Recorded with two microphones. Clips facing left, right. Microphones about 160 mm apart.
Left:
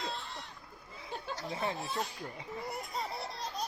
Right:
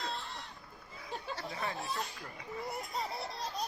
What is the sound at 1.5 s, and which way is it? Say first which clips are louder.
Speech: left 4 dB; 25° left (ahead or behind).